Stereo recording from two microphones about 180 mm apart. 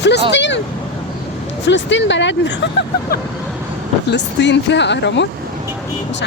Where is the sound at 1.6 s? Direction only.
90° left.